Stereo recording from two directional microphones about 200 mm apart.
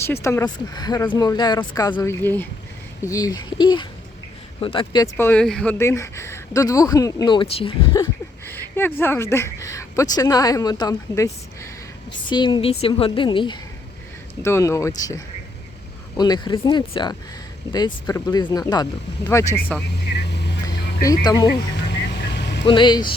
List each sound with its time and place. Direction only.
0.0 s speech: 10° left (ahead or behind)
5.1 s speech: 10° left (ahead or behind); by 8.0 s 25° left (ahead or behind)
8.4 s speech: 10° left (ahead or behind)
16.1 s speech: 20° left (ahead or behind)
20.1 s vehicle: 60° left (ahead or behind)
21.0 s speech: 20° left (ahead or behind)
21.8 s vehicle: 60° left (ahead or behind)
22.6 s speech: 25° left (ahead or behind)